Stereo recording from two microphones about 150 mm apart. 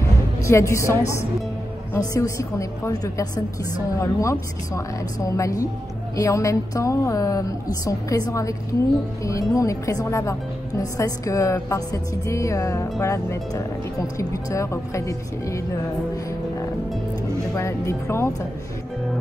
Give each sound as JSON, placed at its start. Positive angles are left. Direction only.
{"t": 0.4, "sound": "a woman's voice", "side_deg": 20}
{"t": 17.6, "sound": "a woman's voice", "side_deg": 20}